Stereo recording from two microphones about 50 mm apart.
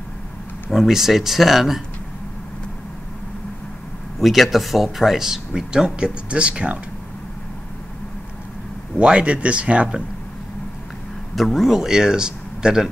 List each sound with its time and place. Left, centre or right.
0.7 s speech: centre
4.2 s speech: centre; by 6.8 s right
8.9 s speech: right
11.3 s speech: centre